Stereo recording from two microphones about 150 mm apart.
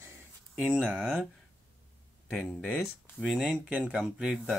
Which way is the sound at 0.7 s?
10° right (ahead or behind).